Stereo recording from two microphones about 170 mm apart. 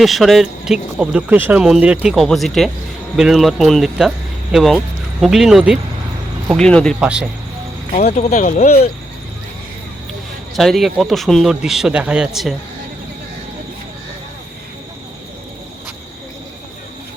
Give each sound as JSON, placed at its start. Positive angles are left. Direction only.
{"t": 0.0, "sound": "speech", "side_deg": 0}
{"t": 8.1, "sound": "speech", "side_deg": 45}
{"t": 10.5, "sound": "speech", "side_deg": 0}